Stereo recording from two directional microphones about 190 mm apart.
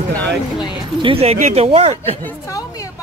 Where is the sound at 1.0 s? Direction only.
30° right (ahead or behind).